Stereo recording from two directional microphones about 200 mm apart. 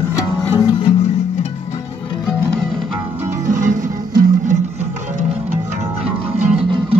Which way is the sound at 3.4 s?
40° right (ahead or behind).